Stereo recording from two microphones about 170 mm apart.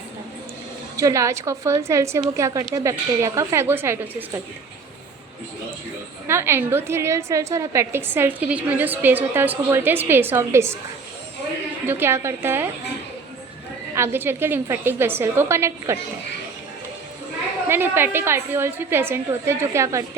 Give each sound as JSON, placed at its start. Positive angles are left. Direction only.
{"t": 0.9, "sound": "a woman's voice", "side_deg": -20}
{"t": 6.2, "sound": "a woman's voice", "side_deg": -15}
{"t": 11.9, "sound": "a woman's voice", "side_deg": -15}
{"t": 13.9, "sound": "a woman's voice", "side_deg": -15}
{"t": 17.7, "sound": "a woman's voice", "side_deg": -15}